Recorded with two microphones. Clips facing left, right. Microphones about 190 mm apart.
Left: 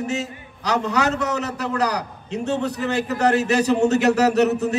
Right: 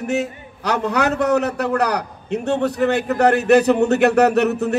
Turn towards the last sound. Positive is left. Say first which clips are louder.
# right 1 dB
turn(degrees=-60)  # may be behind; listen again after turning